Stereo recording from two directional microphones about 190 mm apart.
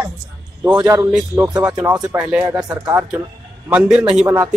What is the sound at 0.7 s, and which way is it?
Speech, 15° right (ahead or behind).